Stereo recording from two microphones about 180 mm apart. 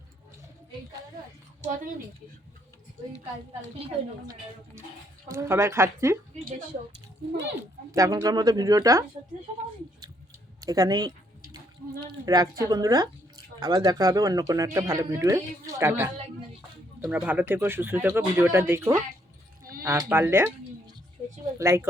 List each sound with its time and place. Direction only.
1.6 s a woman's voice: 45° right (ahead or behind)
5.3 s speech: 15° right (ahead or behind)
7.9 s speech: 20° right (ahead or behind)
10.6 s speech: 20° right (ahead or behind)